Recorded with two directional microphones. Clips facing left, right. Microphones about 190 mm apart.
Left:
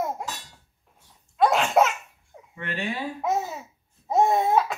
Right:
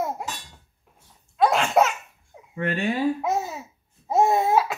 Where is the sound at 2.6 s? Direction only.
50° right (ahead or behind).